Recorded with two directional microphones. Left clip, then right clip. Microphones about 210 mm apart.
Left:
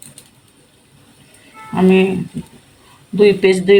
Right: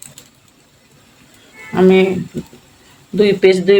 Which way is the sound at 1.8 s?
20° right (ahead or behind).